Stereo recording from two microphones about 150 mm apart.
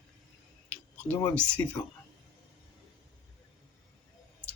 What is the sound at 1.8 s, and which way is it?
Speech, 20° left (ahead or behind).